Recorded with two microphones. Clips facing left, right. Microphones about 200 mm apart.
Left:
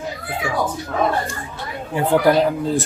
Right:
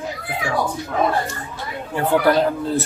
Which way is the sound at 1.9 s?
15° left (ahead or behind).